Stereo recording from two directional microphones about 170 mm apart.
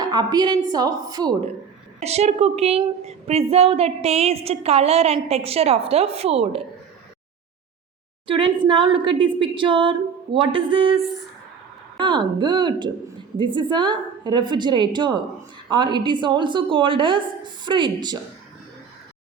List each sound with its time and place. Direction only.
0.0 s a woman's voice: 25° right (ahead or behind)
2.0 s a woman's voice: 40° right (ahead or behind)
8.3 s a woman's voice: 30° right (ahead or behind)
11.9 s a woman's voice: 30° right (ahead or behind)